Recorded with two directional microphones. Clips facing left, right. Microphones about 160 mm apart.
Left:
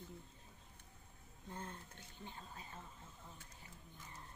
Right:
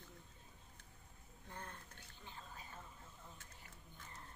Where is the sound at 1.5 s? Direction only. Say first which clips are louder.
Left 3 dB; 20° left (ahead or behind).